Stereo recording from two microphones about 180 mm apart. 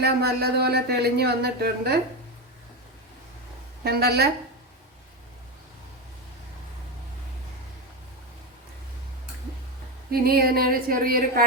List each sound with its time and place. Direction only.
0.0 s speech: 60° right (ahead or behind)
3.8 s speech: 60° right (ahead or behind)
10.1 s speech: 55° right (ahead or behind)